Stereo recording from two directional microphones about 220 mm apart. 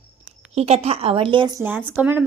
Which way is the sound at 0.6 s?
30° right (ahead or behind).